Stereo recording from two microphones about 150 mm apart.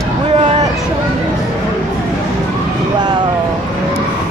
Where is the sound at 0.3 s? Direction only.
45° right (ahead or behind).